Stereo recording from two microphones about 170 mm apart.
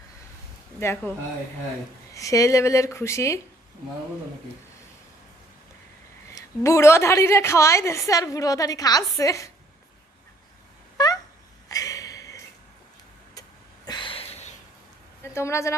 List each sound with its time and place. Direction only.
0.8 s speech: 15° left (ahead or behind)
2.1 s speech: 20° left (ahead or behind)
6.3 s a woman's voice: 15° left (ahead or behind)
10.9 s a sound: 20° left (ahead or behind)
13.8 s a sound: 25° left (ahead or behind)
15.2 s a woman's voice: 15° left (ahead or behind)